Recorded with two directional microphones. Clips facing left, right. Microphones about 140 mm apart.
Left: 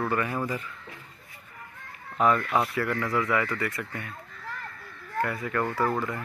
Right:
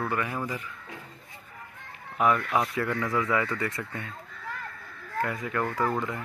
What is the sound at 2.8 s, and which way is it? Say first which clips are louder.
Speech: left 1 dB; 20° right (ahead or behind).